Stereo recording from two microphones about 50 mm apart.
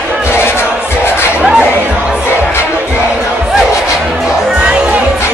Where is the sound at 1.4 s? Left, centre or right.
Right.